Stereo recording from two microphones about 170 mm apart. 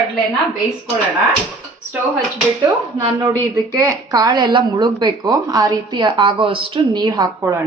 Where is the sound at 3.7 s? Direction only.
20° right (ahead or behind).